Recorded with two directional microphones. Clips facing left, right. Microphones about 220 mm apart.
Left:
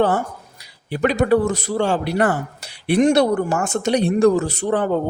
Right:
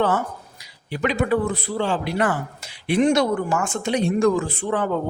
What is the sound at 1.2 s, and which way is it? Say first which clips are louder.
Speech: left 5 dB; 40° left (ahead or behind).